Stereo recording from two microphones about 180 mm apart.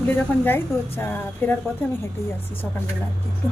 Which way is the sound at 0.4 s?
10° left (ahead or behind).